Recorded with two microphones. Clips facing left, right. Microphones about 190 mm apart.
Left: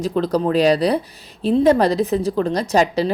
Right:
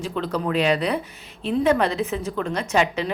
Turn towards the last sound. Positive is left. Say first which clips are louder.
# left 5 dB
turn(degrees=35)  # may be behind; listen again after turning